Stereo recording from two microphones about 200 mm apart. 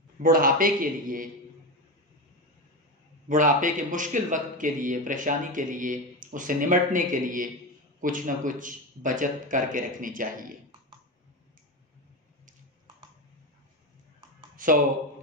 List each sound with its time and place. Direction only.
0.2 s a man's voice: 45° right (ahead or behind)
3.3 s a man's voice: 40° right (ahead or behind)
14.6 s a sound: 40° right (ahead or behind)